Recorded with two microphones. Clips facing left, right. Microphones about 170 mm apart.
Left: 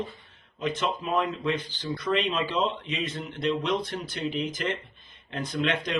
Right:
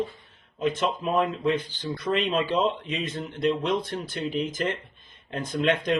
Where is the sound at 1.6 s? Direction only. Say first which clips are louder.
Right 1 dB; 10° right (ahead or behind).